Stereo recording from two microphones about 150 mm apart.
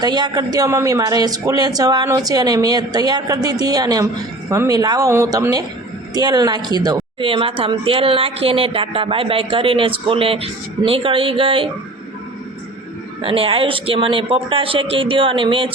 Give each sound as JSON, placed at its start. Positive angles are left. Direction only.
{"t": 0.0, "sound": "a man's voice", "side_deg": -30}
{"t": 13.2, "sound": "a woman's voice", "side_deg": -40}